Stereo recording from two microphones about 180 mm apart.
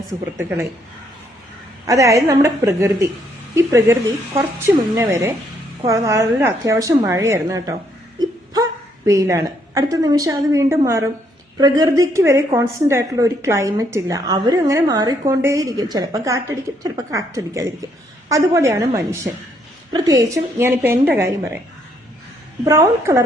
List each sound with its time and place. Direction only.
0.3 s a woman's voice: 15° right (ahead or behind)
1.9 s a woman's voice: 15° right (ahead or behind)
22.6 s a woman's voice: 15° right (ahead or behind)